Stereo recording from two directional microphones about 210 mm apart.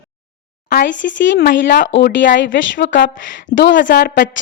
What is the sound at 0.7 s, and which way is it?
A woman's voice, 55° left (ahead or behind).